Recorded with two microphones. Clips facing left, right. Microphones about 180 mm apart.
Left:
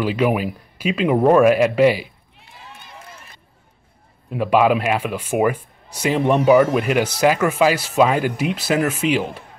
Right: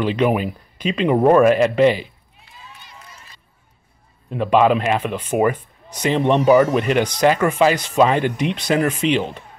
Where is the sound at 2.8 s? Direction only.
55° left (ahead or behind).